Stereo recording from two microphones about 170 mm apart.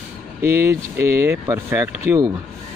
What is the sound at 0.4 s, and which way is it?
Speech, 10° right (ahead or behind).